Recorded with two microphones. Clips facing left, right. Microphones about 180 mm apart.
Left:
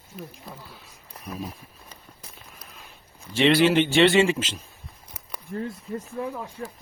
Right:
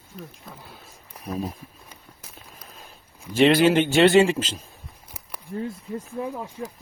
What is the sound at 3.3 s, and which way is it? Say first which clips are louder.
Speech: right 2 dB; 45° right (ahead or behind).